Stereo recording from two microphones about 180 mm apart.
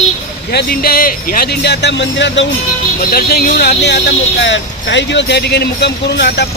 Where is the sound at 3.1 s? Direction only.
60° left (ahead or behind).